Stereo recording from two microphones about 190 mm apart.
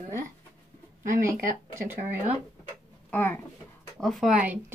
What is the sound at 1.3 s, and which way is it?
Speech, 45° right (ahead or behind).